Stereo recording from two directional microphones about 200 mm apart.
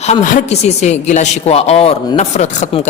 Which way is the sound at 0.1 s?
35° left (ahead or behind).